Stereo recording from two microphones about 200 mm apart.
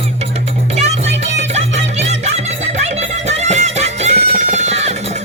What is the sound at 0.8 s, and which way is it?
Music, 35° right (ahead or behind).